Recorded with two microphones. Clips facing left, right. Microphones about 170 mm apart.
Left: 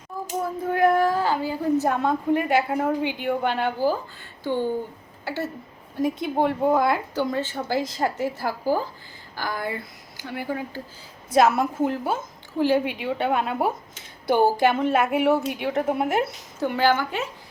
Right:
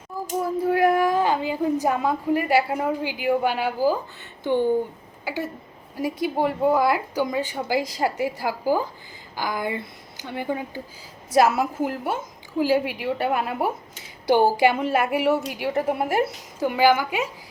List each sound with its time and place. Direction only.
0.6 s a woman's voice: 10° right (ahead or behind)
5.2 s a woman's voice: 15° right (ahead or behind)
11.3 s a woman's voice: 5° right (ahead or behind)